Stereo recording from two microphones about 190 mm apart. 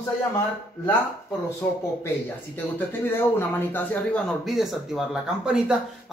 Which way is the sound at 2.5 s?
10° left (ahead or behind).